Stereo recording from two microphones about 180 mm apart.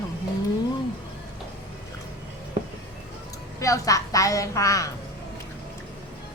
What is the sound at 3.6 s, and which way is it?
Speech, 15° left (ahead or behind).